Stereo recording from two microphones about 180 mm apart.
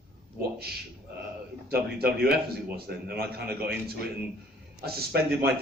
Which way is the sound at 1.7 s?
60° right (ahead or behind).